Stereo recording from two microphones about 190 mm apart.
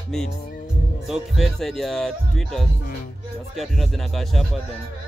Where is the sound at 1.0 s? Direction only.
Centre (ahead or behind).